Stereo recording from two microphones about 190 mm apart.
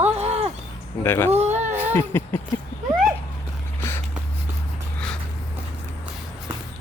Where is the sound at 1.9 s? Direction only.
10° left (ahead or behind).